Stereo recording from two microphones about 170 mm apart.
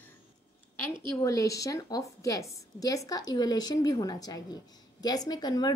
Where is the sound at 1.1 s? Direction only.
20° left (ahead or behind).